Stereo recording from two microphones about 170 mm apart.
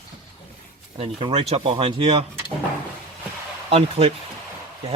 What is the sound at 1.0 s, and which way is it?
Speech, 35° right (ahead or behind).